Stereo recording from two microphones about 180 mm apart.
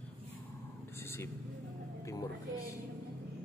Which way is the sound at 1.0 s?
15° left (ahead or behind).